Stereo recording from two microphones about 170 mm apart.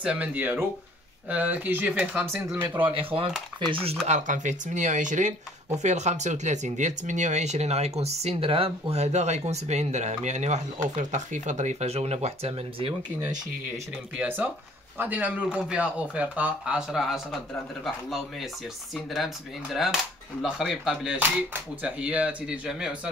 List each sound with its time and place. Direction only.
0.0 s speech: 10° right (ahead or behind)
4.1 s speech: 45° right (ahead or behind)
14.1 s speech: 10° right (ahead or behind)